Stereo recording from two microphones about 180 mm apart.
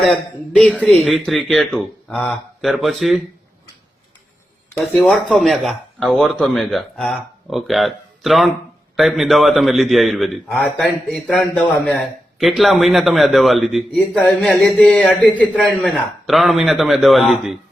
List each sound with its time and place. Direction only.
0.5 s a man's voice: 5° left (ahead or behind)
4.8 s a man's voice: centre (ahead or behind)